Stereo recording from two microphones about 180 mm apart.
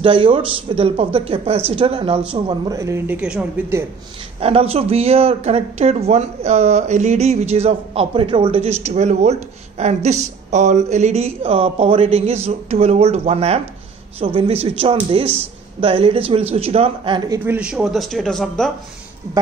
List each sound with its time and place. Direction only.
0.0 s speech: 30° right (ahead or behind); by 3.8 s 5° right (ahead or behind)
4.4 s speech: 30° right (ahead or behind)
17.5 s a man's voice: 5° right (ahead or behind)